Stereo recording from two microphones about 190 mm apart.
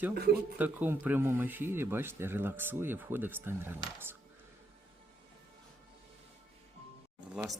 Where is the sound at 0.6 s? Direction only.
10° right (ahead or behind).